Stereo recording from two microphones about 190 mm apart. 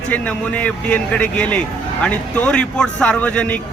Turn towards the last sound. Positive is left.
turn(degrees=10)  # may be behind; listen again after turning